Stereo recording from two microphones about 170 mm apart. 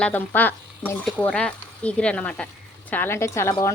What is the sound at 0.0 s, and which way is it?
Speech, 10° left (ahead or behind).